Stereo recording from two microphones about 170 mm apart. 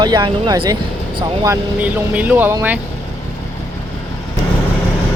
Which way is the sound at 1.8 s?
10° right (ahead or behind).